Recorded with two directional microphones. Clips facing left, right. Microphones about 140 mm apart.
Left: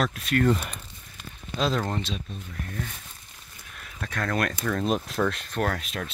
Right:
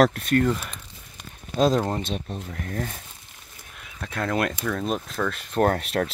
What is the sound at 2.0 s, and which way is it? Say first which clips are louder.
Speech: right 3 dB; 55° right (ahead or behind).